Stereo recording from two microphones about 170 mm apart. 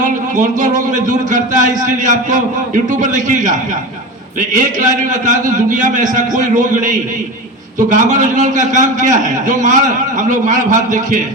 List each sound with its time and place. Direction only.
0.0 s speech: 50° right (ahead or behind)